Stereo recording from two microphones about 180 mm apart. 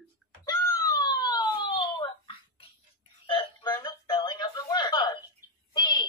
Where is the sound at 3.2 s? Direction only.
25° left (ahead or behind).